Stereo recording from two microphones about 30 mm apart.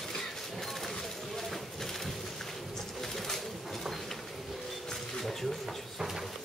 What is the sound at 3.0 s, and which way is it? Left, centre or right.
Pigeon, centre.